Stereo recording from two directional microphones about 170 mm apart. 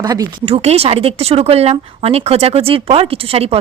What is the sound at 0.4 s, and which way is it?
Speech, 35° right (ahead or behind).